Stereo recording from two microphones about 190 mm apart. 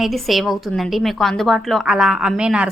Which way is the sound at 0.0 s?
Centre (ahead or behind).